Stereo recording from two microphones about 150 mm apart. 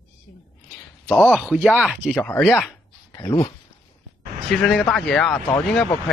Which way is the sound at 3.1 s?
25° left (ahead or behind).